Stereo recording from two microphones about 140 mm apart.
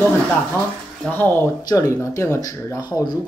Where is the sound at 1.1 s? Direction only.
15° left (ahead or behind).